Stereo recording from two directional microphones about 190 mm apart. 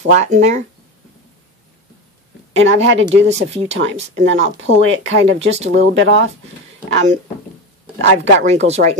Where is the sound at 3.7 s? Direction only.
35° right (ahead or behind).